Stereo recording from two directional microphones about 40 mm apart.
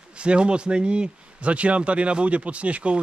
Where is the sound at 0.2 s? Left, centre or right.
Right.